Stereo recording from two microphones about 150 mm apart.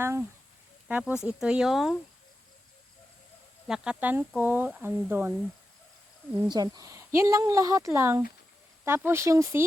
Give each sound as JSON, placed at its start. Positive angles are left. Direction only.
{"t": 0.0, "sound": "speech", "side_deg": -15}
{"t": 3.7, "sound": "speech", "side_deg": -10}
{"t": 6.4, "sound": "speech", "side_deg": -25}